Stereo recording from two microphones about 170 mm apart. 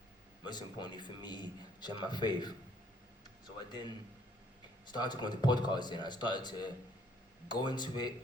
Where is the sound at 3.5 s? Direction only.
25° left (ahead or behind).